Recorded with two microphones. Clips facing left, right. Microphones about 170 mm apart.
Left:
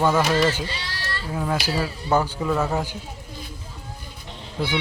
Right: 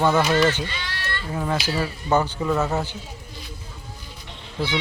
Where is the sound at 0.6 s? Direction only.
35° left (ahead or behind).